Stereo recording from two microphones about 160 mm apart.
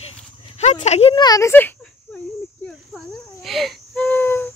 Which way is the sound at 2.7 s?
Centre (ahead or behind).